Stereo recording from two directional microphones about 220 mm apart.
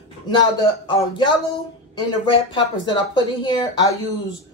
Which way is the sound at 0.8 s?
20° left (ahead or behind).